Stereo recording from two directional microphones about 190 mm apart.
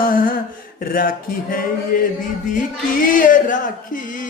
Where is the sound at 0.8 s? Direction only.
45° left (ahead or behind).